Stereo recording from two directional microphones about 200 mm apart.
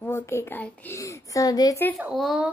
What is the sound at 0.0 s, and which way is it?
A woman's voice, 15° left (ahead or behind).